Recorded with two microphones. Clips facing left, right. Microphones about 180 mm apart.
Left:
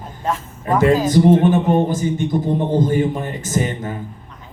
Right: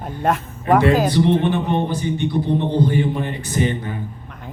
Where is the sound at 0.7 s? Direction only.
45° left (ahead or behind).